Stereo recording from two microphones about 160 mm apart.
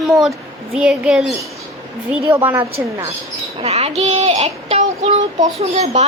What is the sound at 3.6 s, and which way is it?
Child singing, 40° right (ahead or behind).